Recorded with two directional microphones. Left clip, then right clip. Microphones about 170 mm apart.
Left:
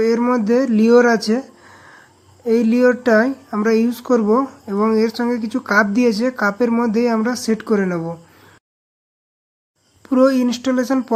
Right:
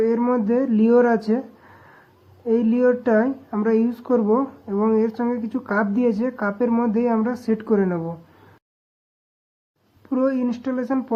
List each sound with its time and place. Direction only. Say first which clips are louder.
0.0 s speech: left 3 dB; 20° left (ahead or behind)
10.1 s speech: left 7 dB; 25° left (ahead or behind)